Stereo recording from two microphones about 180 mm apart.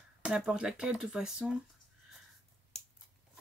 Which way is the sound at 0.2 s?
5° right (ahead or behind).